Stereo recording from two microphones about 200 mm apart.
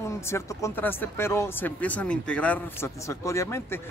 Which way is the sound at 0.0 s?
15° left (ahead or behind).